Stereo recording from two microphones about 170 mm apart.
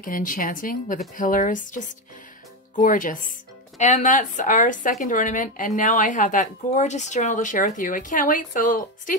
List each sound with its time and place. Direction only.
0.0 s speech: 55° left (ahead or behind)